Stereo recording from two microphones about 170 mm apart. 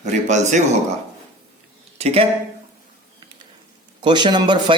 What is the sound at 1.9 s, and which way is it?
Speech, 35° right (ahead or behind).